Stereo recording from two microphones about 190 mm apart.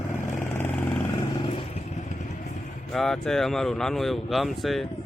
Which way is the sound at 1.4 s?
30° left (ahead or behind).